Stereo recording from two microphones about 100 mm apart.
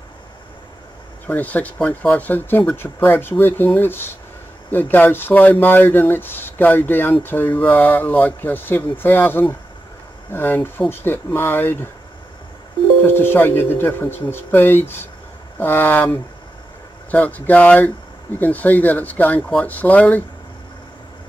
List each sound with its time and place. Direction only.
1.2 s speech: 15° left (ahead or behind)
13.0 s speech: 20° left (ahead or behind)